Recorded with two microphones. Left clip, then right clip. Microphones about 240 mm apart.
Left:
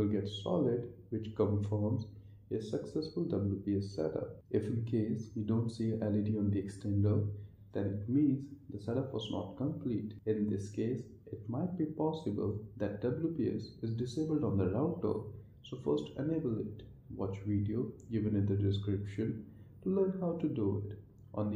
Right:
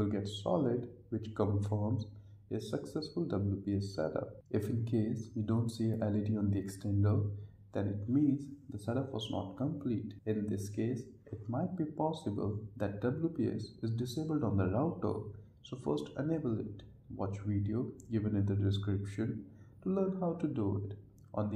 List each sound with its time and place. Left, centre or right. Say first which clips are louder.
0.0 s speech: left 1 dB; right